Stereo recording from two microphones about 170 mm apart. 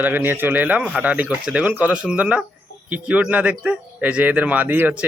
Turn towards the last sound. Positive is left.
turn(degrees=-10)  # may be behind; listen again after turning